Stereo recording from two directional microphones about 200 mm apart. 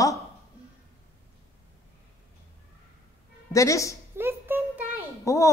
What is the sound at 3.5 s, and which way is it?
Speech, 15° left (ahead or behind).